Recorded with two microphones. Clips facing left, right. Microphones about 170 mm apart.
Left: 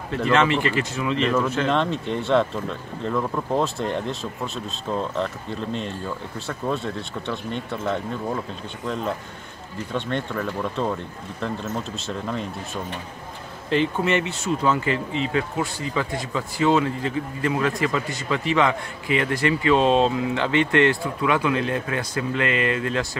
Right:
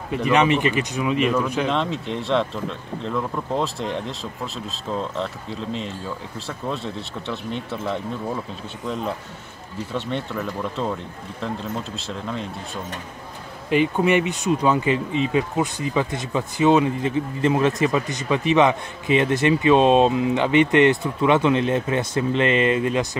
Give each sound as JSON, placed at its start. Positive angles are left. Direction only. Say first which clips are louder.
{"t": 0.1, "sound": "speech", "louder": "right 2 dB", "side_deg": -15}
{"t": 1.7, "sound": "speech", "louder": "left 1 dB", "side_deg": 0}
{"t": 13.7, "sound": "speech", "louder": "right 3 dB", "side_deg": -15}